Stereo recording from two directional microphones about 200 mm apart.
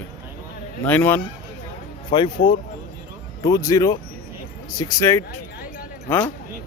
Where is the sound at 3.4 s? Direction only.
15° left (ahead or behind).